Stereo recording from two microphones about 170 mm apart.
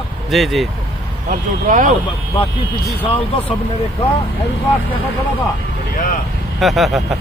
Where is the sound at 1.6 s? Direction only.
50° right (ahead or behind).